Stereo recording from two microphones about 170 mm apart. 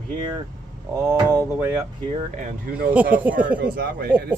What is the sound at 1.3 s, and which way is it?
Speech, 10° right (ahead or behind).